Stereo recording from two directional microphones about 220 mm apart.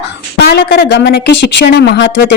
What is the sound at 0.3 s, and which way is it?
A woman's voice, 50° left (ahead or behind).